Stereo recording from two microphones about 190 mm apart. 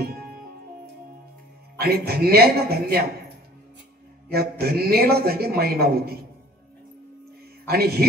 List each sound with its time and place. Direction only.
1.8 s a man's voice: 55° right (ahead or behind)
4.3 s a man's voice: 55° right (ahead or behind)
7.6 s a man's voice: 55° right (ahead or behind)